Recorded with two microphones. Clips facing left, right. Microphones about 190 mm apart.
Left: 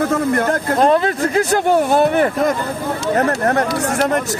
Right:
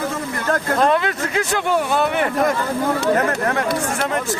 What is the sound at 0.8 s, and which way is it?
Speech, 35° left (ahead or behind).